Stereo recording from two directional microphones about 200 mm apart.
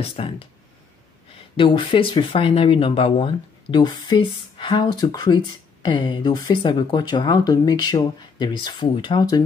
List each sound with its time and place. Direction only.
0.0 s speech: 30° left (ahead or behind)
1.6 s speech: 25° left (ahead or behind)